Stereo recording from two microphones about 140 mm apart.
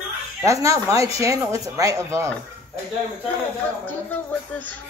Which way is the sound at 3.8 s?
10° left (ahead or behind).